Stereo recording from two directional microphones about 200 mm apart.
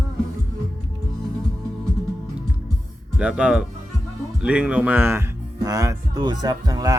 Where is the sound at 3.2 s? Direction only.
5° right (ahead or behind).